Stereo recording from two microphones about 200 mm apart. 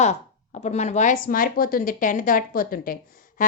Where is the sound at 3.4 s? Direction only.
40° left (ahead or behind).